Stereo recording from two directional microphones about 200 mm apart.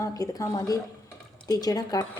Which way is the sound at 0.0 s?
15° left (ahead or behind).